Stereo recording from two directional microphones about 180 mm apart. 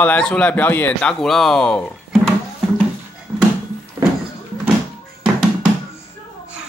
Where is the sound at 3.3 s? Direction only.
10° right (ahead or behind).